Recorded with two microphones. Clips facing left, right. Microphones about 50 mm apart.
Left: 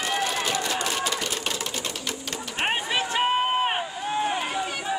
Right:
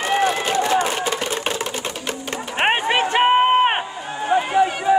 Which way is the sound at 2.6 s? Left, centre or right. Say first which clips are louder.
Right 8 dB; right.